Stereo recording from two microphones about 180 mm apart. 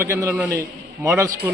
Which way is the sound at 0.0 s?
15° right (ahead or behind).